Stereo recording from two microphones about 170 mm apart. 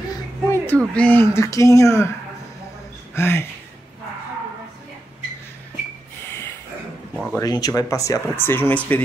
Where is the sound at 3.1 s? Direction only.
15° left (ahead or behind).